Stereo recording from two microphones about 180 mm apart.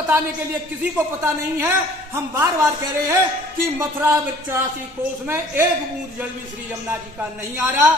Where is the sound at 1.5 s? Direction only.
15° right (ahead or behind).